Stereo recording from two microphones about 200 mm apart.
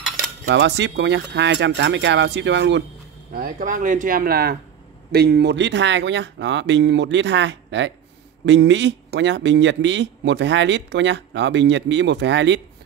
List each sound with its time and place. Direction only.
0.5 s speech: 60° right (ahead or behind)
3.3 s speech: 45° right (ahead or behind); by 12.6 s 65° right (ahead or behind)